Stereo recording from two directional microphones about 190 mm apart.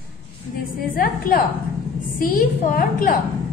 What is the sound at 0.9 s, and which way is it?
A woman's voice, 50° left (ahead or behind).